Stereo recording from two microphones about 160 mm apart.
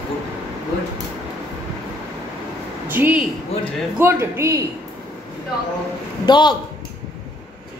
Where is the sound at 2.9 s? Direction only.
10° right (ahead or behind).